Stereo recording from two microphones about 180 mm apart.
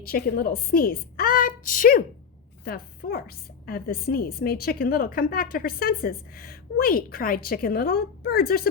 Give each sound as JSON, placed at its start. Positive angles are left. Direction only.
{"t": 0.0, "sound": "a woman's voice", "side_deg": 60}